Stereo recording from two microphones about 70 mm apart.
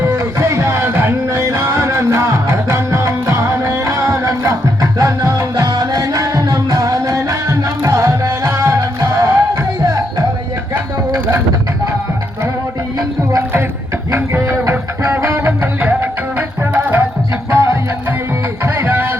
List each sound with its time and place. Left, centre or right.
0.0 s music: right
5.5 s music: right
14.7 s music: right
17.5 s music: right